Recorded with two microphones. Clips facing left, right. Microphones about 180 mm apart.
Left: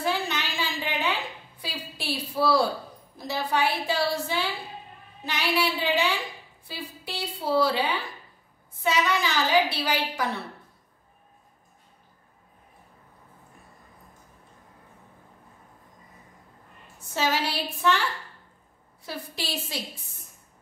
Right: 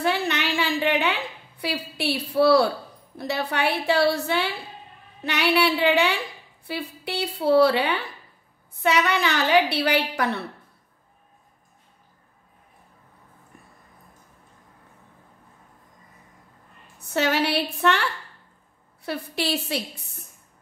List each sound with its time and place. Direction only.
0.0 s a sound: 65° right (ahead or behind)
2.0 s a woman's voice: 65° right (ahead or behind)
17.0 s a woman's voice: 65° right (ahead or behind)
19.0 s a woman's voice: 65° right (ahead or behind)